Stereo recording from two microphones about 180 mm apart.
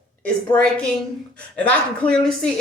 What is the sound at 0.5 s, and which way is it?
Speech, 20° left (ahead or behind).